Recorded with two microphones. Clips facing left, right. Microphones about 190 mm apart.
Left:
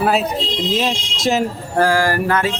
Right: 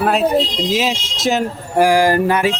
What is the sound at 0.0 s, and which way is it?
Speech, centre (ahead or behind).